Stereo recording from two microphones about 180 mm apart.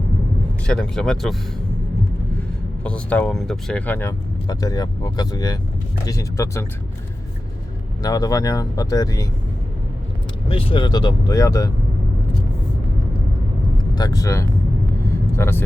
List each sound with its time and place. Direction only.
0.7 s speech: 5° left (ahead or behind)
2.8 s speech: 5° left (ahead or behind)
8.0 s speech: 20° left (ahead or behind)
10.5 s speech: 30° left (ahead or behind)
13.7 s speech: 20° left (ahead or behind)